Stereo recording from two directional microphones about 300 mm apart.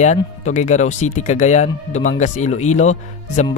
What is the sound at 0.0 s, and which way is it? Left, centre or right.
Speech, left.